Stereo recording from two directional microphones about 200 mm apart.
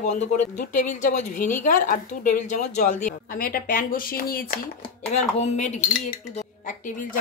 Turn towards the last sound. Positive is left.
turn(degrees=40)  # may be behind; listen again after turning